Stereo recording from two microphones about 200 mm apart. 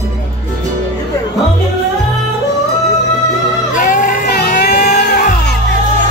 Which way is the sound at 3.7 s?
40° left (ahead or behind).